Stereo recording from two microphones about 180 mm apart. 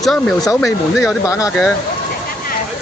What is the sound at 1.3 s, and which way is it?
Speech, 20° left (ahead or behind).